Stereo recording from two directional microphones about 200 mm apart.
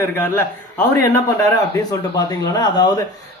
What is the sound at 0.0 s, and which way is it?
Speech, 10° left (ahead or behind).